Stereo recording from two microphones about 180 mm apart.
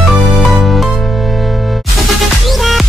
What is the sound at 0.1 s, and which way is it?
Music, centre (ahead or behind).